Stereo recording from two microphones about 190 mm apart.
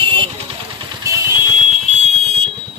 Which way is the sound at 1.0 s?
15° right (ahead or behind).